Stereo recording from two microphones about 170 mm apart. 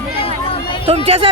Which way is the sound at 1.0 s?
35° right (ahead or behind).